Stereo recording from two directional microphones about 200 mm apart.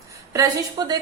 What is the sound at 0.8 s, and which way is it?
Speech, 20° right (ahead or behind).